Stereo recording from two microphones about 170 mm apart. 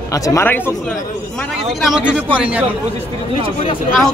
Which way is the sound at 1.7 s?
Centre (ahead or behind).